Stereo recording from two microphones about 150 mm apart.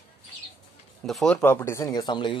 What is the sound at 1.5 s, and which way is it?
Speech, 20° left (ahead or behind).